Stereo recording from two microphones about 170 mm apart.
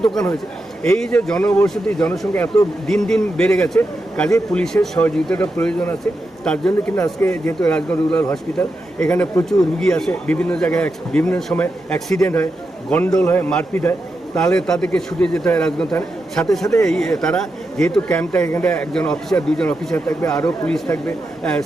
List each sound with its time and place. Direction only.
0.0 s a man's voice: 5° left (ahead or behind)